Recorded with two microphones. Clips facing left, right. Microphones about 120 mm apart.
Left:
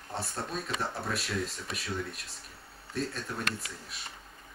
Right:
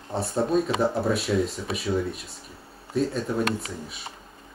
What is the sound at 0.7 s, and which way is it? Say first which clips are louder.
Speech: right 11 dB; 30° right (ahead or behind).